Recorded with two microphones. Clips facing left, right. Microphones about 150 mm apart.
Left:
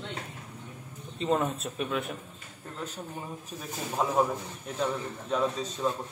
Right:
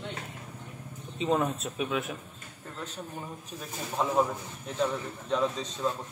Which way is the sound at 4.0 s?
5° left (ahead or behind).